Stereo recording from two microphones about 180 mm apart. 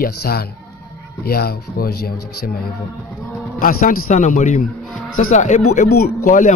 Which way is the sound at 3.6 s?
50° left (ahead or behind).